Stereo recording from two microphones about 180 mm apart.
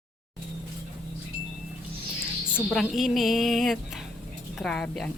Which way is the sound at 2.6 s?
5° right (ahead or behind).